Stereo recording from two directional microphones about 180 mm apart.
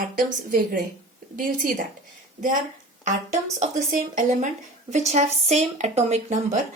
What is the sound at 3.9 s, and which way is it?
Speech, 45° right (ahead or behind).